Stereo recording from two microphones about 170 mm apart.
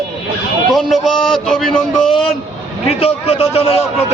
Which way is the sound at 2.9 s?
35° left (ahead or behind).